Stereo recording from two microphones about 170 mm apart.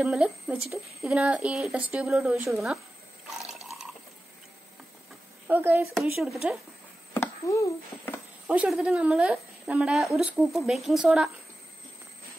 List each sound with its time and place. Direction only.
0.0 s a woman's voice: 5° right (ahead or behind)
3.4 s water: centre (ahead or behind)
5.5 s speech: 10° right (ahead or behind)
5.9 s a woman's voice: centre (ahead or behind)
7.2 s speech: 20° left (ahead or behind)
8.5 s a woman's voice: 5° right (ahead or behind)